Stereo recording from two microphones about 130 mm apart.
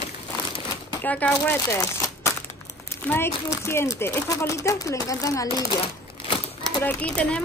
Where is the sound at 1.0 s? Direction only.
10° left (ahead or behind); by 5.6 s 25° left (ahead or behind).